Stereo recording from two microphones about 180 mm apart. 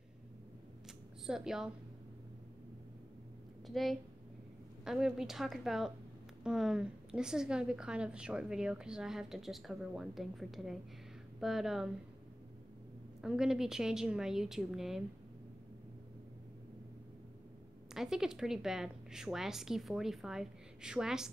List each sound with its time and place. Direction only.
1.2 s a woman's voice: 5° right (ahead or behind)
3.6 s a woman's voice: centre (ahead or behind)
13.2 s a woman's voice: 5° right (ahead or behind)
17.9 s a woman's voice: centre (ahead or behind)